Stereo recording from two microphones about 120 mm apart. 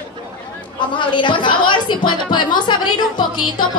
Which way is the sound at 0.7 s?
40° left (ahead or behind).